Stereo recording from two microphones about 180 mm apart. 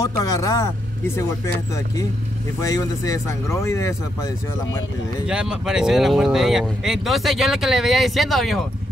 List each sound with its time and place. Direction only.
0.0 s speech: 20° left (ahead or behind)
2.6 s speech: 20° left (ahead or behind)
5.2 s speech: 5° right (ahead or behind)